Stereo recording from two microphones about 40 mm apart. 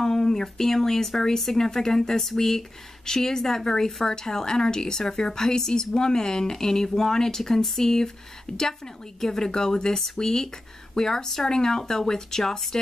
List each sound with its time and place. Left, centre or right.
0.0 s speech: centre